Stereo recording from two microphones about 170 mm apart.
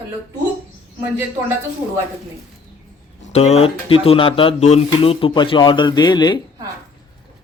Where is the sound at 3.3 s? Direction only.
40° left (ahead or behind).